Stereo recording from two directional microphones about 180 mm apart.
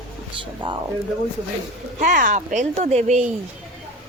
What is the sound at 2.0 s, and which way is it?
Speech, 45° right (ahead or behind).